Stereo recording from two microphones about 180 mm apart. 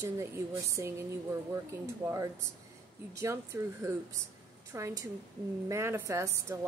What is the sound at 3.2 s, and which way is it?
Speech, 15° right (ahead or behind).